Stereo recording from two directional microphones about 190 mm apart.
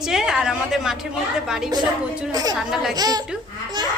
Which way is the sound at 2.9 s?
20° right (ahead or behind).